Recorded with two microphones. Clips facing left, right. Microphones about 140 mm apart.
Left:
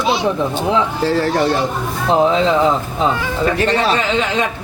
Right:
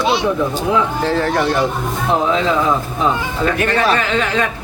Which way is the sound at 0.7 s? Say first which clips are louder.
Left 1 dB; 35° left (ahead or behind).